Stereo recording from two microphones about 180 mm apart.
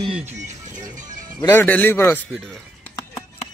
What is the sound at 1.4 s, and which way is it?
Speech, 15° left (ahead or behind).